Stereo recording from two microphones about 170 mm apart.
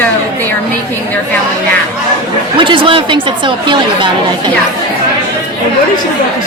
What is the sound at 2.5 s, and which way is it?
Speech, 30° right (ahead or behind).